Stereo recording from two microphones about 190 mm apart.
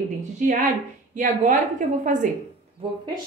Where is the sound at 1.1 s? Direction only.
45° right (ahead or behind).